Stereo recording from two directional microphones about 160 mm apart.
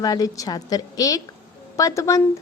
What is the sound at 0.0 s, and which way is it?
Speech, 25° left (ahead or behind).